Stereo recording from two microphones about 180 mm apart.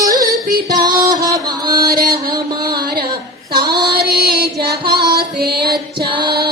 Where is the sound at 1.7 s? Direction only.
55° right (ahead or behind).